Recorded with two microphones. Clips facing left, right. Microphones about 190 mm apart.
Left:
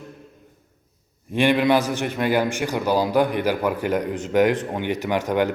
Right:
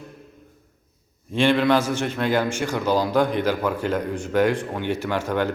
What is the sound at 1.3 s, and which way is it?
A man's voice, 15° left (ahead or behind).